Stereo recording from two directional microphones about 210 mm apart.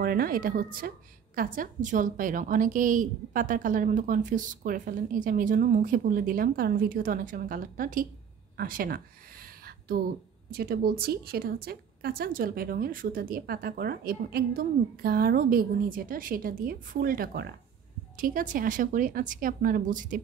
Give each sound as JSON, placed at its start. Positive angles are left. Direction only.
{"t": 0.0, "sound": "a woman's voice", "side_deg": -45}
{"t": 8.5, "sound": "a sound", "side_deg": -40}
{"t": 10.5, "sound": "a woman's voice", "side_deg": -45}